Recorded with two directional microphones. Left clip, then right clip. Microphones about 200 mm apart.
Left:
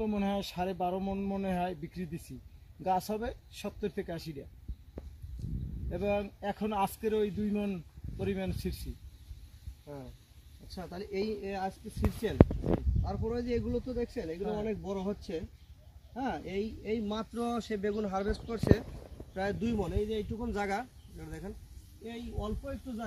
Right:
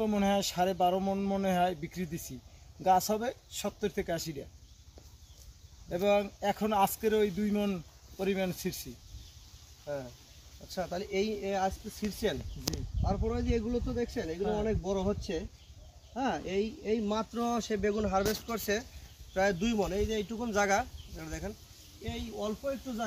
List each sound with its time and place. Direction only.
0.0 s speech: 5° right (ahead or behind)
5.9 s speech: 5° right (ahead or behind)
9.9 s speech: 30° right (ahead or behind)
13.0 s speech: 10° right (ahead or behind)
14.7 s speech: 15° right (ahead or behind)
22.0 s speech: 5° right (ahead or behind)